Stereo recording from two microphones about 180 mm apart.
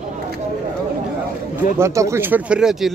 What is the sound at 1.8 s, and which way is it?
Speech, 15° right (ahead or behind).